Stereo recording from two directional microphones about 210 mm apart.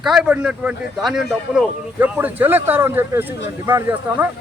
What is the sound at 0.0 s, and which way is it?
A man's voice, 5° right (ahead or behind).